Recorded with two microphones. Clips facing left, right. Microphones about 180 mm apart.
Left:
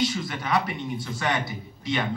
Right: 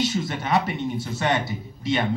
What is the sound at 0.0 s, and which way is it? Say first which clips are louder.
Speech: right 2 dB; 25° right (ahead or behind).